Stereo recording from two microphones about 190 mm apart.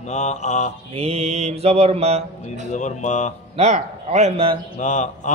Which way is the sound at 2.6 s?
40° left (ahead or behind).